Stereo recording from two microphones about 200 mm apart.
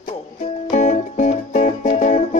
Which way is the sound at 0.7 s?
35° left (ahead or behind).